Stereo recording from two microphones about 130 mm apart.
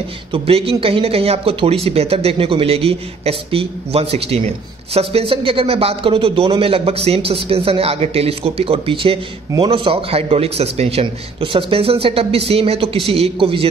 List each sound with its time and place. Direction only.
0.3 s speech: 45° right (ahead or behind)